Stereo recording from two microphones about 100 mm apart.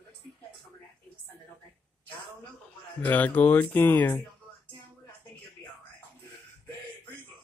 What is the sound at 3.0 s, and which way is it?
Speech, 20° left (ahead or behind).